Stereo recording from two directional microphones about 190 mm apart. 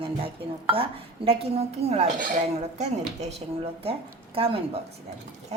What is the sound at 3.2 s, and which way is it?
A woman's voice, 35° right (ahead or behind).